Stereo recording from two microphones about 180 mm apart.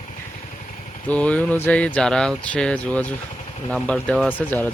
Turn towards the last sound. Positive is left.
turn(degrees=10)  # may be behind; listen again after turning